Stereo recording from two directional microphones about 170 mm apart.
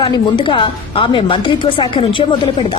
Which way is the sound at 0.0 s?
30° left (ahead or behind).